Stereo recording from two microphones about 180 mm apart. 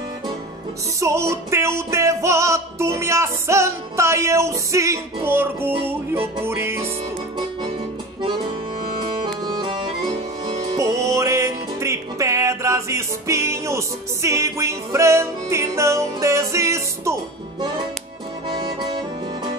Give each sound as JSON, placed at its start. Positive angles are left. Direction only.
{"t": 1.0, "sound": "music", "side_deg": -15}
{"t": 9.0, "sound": "accordion", "side_deg": -25}